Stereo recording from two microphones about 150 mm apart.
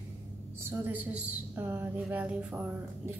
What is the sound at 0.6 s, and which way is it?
A woman's voice, 10° right (ahead or behind).